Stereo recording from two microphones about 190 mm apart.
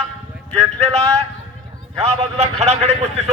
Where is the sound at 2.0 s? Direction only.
35° right (ahead or behind).